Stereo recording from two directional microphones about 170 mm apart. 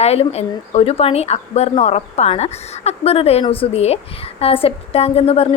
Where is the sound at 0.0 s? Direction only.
35° left (ahead or behind).